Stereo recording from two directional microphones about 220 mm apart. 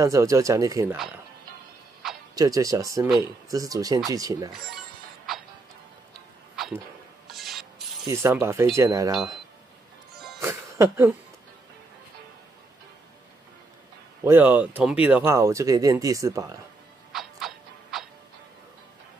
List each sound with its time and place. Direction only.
0.0 s speech: 15° right (ahead or behind)
2.3 s speech: 15° right (ahead or behind)
4.5 s a sound: centre (ahead or behind)
6.5 s music: centre (ahead or behind)
7.2 s rub: centre (ahead or behind)
8.1 s speech: 10° right (ahead or behind)
10.1 s music: centre (ahead or behind)
10.4 s music: 10° right (ahead or behind)
14.2 s speech: 10° right (ahead or behind)
17.1 s music: centre (ahead or behind)